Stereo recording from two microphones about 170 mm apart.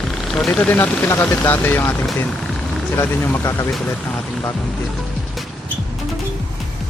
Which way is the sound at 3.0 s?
15° left (ahead or behind).